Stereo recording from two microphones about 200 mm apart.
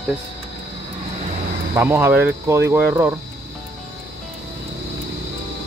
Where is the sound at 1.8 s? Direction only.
10° right (ahead or behind).